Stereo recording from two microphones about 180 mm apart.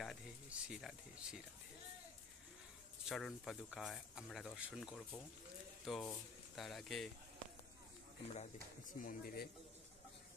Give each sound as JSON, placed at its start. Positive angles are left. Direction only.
{"t": 0.0, "sound": "speech", "side_deg": -5}
{"t": 3.1, "sound": "speech", "side_deg": 0}
{"t": 8.4, "sound": "speech", "side_deg": 45}